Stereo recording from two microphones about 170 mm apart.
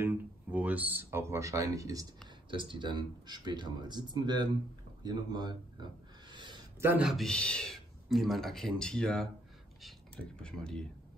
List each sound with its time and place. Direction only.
0.0 s speech: 10° right (ahead or behind)
5.0 s owl: 25° right (ahead or behind)
6.8 s a man's voice: 10° right (ahead or behind)